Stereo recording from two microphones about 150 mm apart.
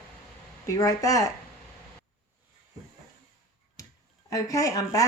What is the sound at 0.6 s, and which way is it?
Speech, 20° left (ahead or behind).